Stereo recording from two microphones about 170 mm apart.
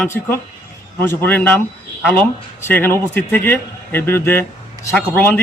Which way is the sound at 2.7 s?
10° left (ahead or behind).